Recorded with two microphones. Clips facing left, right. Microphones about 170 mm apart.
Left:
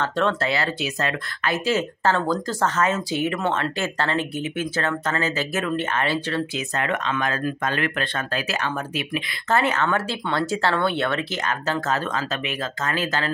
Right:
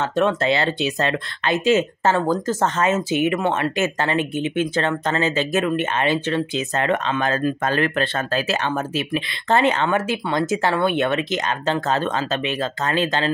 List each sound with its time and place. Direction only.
0.0 s speech: 15° right (ahead or behind)
6.9 s speech: 30° right (ahead or behind)